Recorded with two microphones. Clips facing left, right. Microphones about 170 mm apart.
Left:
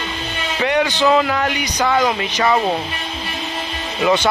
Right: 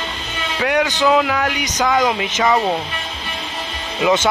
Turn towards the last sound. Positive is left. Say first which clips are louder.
# even
turn(degrees=-5)  # may be behind; listen again after turning